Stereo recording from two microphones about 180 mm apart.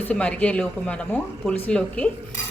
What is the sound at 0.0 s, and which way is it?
A woman's voice, 5° left (ahead or behind).